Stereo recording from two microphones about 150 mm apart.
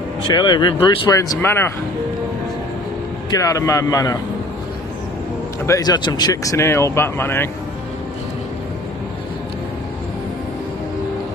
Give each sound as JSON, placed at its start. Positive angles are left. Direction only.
{"t": 0.3, "sound": "speech", "side_deg": 30}
{"t": 3.3, "sound": "speech", "side_deg": 25}
{"t": 5.7, "sound": "speech", "side_deg": 25}